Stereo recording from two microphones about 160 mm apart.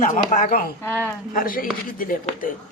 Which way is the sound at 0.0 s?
55° left (ahead or behind).